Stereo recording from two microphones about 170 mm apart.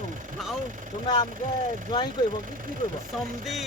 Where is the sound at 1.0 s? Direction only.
30° left (ahead or behind).